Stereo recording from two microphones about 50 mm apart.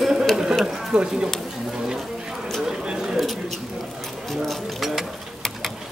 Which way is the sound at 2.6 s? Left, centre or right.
Centre.